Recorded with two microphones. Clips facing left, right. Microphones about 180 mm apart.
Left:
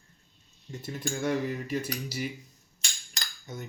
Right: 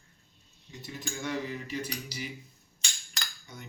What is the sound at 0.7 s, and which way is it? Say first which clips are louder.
Speech: left 6 dB; 50° left (ahead or behind).